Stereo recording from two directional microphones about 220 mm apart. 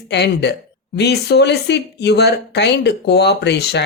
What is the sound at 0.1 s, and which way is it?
Speech, 50° left (ahead or behind).